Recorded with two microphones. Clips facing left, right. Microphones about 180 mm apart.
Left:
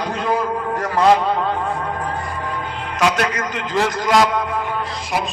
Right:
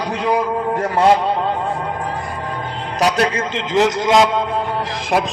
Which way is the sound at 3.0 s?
35° right (ahead or behind).